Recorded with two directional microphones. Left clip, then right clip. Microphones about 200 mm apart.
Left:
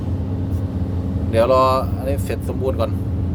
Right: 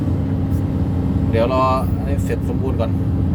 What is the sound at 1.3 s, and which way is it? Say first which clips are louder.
Speech: left 3 dB; 25° left (ahead or behind).